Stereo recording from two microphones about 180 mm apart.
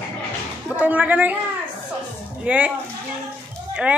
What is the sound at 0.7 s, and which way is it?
Speech, 10° right (ahead or behind).